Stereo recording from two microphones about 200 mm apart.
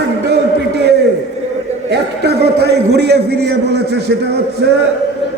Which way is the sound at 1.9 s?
55° right (ahead or behind).